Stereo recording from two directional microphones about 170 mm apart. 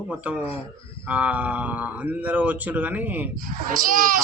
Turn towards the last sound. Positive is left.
turn(degrees=-55)  # may be behind; listen again after turning